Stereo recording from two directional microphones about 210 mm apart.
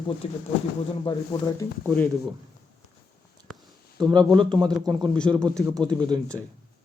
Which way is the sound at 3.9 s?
20° right (ahead or behind).